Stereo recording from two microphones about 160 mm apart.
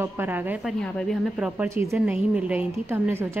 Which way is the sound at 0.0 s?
10° right (ahead or behind).